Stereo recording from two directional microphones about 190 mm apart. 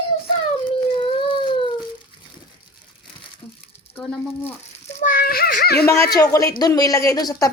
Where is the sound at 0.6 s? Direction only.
25° left (ahead or behind).